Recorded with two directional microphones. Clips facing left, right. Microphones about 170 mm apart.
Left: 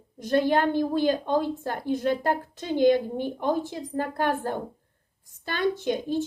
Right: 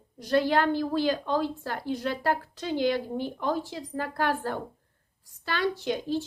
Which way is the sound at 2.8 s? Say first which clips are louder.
Left 7 dB; 50° left (ahead or behind).